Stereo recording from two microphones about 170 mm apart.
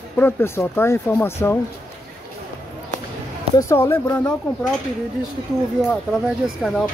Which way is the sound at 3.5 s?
15° left (ahead or behind).